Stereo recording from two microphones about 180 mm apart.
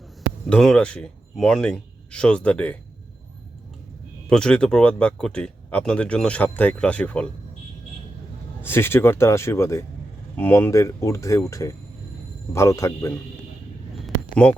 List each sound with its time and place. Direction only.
0.5 s speech: 5° left (ahead or behind)
4.3 s speech: 5° left (ahead or behind)
8.6 s speech: 10° left (ahead or behind)